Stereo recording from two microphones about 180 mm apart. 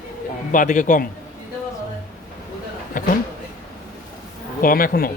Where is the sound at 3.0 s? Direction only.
45° left (ahead or behind).